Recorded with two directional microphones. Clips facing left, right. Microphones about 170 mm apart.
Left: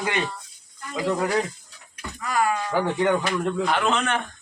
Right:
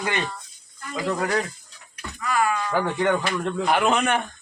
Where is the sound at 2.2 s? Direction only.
40° left (ahead or behind).